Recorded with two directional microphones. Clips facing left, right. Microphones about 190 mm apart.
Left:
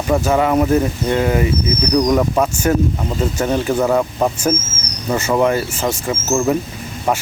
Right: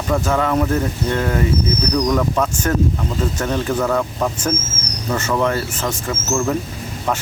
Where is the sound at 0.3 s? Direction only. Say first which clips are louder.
Left 4 dB; 15° left (ahead or behind).